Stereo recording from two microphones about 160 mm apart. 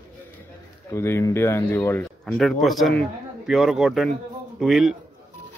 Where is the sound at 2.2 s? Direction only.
Centre (ahead or behind).